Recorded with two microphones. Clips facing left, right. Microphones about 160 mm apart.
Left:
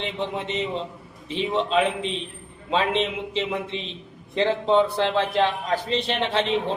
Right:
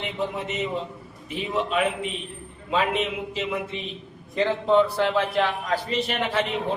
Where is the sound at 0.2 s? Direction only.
25° left (ahead or behind).